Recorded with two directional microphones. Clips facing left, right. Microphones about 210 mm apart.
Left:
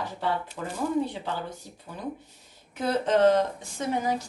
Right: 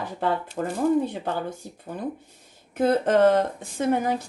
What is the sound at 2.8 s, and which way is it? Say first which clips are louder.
A woman's voice: right 4 dB; 55° right (ahead or behind).